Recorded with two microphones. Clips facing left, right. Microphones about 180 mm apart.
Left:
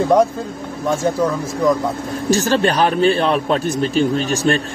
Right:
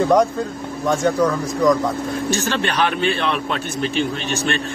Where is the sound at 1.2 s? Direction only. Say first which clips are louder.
Even; 5° left (ahead or behind).